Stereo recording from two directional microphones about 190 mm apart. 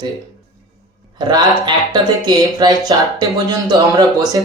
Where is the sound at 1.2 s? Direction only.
20° right (ahead or behind).